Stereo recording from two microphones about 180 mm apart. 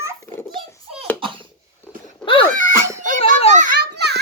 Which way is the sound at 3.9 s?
65° right (ahead or behind).